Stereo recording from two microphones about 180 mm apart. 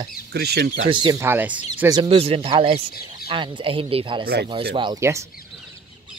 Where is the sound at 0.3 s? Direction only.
65° right (ahead or behind).